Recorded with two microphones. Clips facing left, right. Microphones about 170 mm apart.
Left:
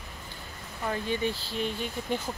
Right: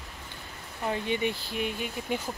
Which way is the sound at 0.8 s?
20° right (ahead or behind).